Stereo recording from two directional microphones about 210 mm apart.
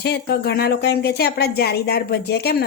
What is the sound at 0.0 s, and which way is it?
Speech, 50° left (ahead or behind).